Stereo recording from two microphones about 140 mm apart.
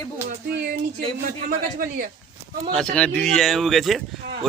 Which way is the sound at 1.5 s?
90° right.